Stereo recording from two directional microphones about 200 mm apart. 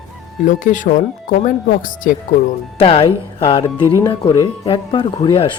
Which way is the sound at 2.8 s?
30° left (ahead or behind).